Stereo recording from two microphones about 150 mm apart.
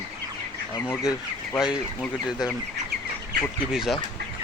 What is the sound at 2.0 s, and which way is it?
Speech, 5° left (ahead or behind).